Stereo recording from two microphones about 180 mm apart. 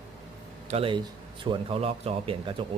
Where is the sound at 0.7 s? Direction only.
30° right (ahead or behind).